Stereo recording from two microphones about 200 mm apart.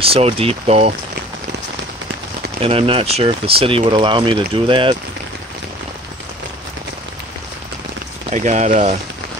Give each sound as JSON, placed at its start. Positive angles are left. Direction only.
{"t": 0.0, "sound": "speech", "side_deg": -30}
{"t": 2.6, "sound": "speech", "side_deg": -30}
{"t": 8.3, "sound": "speech", "side_deg": -35}